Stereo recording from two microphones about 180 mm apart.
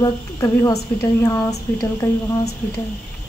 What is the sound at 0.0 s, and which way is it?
Speech, 20° left (ahead or behind).